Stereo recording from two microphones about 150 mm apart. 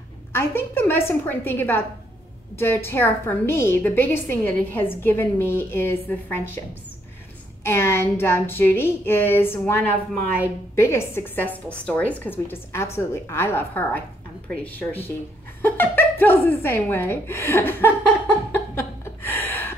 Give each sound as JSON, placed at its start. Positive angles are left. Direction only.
{"t": 0.3, "sound": "a woman's voice", "side_deg": 15}
{"t": 7.6, "sound": "a woman's voice", "side_deg": 15}
{"t": 18.5, "sound": "chuckle", "side_deg": 15}